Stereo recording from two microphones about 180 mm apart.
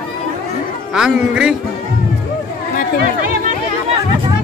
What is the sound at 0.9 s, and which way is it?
Speech, 5° right (ahead or behind).